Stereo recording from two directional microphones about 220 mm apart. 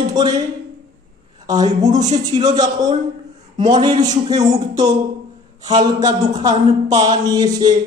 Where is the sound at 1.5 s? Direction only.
15° right (ahead or behind).